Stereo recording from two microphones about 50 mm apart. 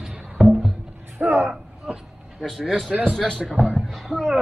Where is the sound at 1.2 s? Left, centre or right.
Right.